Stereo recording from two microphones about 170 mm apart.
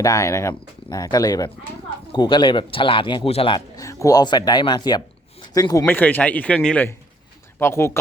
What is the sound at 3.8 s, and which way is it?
A man's voice, 20° left (ahead or behind).